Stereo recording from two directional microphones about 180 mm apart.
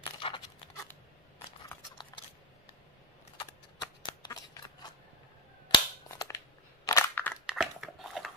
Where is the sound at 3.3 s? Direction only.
30° left (ahead or behind).